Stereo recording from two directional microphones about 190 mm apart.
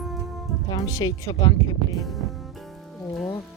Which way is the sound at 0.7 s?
20° left (ahead or behind).